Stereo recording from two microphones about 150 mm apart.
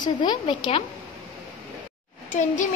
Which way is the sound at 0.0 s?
30° left (ahead or behind).